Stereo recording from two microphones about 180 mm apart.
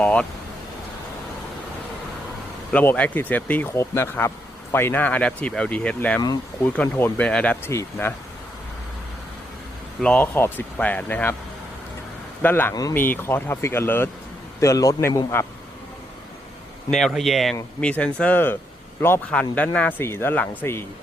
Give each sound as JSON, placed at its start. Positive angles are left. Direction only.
{"t": 0.0, "sound": "speech", "side_deg": 5}
{"t": 2.7, "sound": "speech", "side_deg": 10}
{"t": 6.2, "sound": "speech", "side_deg": 20}
{"t": 6.7, "sound": "speech", "side_deg": 10}
{"t": 10.0, "sound": "speech", "side_deg": 10}
{"t": 12.4, "sound": "speech", "side_deg": 10}
{"t": 16.9, "sound": "speech", "side_deg": 0}